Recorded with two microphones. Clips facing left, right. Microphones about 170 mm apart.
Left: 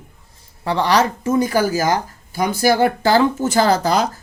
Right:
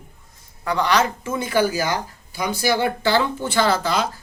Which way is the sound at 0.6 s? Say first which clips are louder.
Left 3 dB; 30° left (ahead or behind).